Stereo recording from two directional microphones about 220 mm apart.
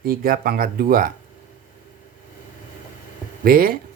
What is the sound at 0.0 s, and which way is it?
Speech, 40° right (ahead or behind).